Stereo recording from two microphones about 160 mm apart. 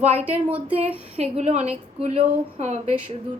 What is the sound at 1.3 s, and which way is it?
A woman's voice, 40° right (ahead or behind).